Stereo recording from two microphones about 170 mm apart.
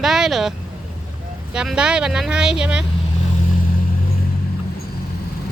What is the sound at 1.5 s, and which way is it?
Speech, 5° right (ahead or behind).